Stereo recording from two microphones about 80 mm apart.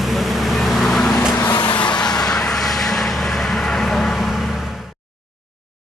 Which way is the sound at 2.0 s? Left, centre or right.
Left.